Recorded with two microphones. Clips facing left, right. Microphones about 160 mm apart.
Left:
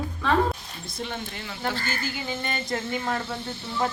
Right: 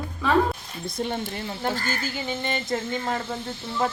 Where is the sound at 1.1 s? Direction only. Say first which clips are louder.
Right 5 dB; 40° right (ahead or behind).